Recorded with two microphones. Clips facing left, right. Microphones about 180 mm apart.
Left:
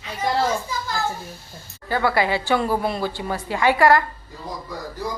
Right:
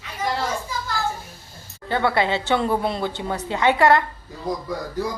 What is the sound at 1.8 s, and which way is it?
Speech, 25° right (ahead or behind).